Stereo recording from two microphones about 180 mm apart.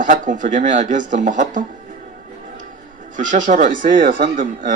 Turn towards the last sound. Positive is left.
turn(degrees=-50)  # may be behind; listen again after turning